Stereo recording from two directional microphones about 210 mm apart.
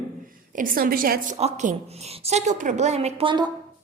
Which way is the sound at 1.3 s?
30° right (ahead or behind).